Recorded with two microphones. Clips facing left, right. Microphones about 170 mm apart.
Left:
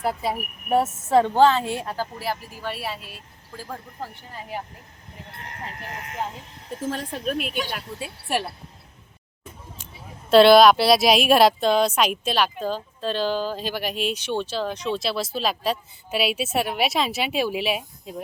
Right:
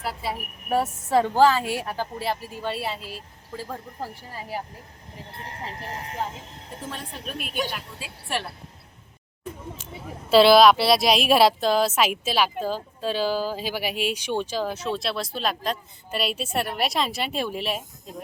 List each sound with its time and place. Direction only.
0.0 s speech: 45° left (ahead or behind)
0.7 s speech: centre (ahead or behind)
2.1 s speech: 25° right (ahead or behind)
5.4 s speech: 30° right (ahead or behind)
7.3 s a woman's voice: 45° right (ahead or behind)
7.7 s a woman's voice: 60° left (ahead or behind)
10.2 s speech: centre (ahead or behind)